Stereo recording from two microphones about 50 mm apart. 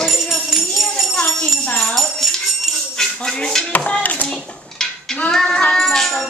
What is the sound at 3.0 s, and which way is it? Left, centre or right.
Music, centre.